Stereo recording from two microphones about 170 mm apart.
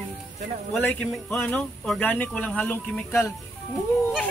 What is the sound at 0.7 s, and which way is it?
Speech, 10° left (ahead or behind).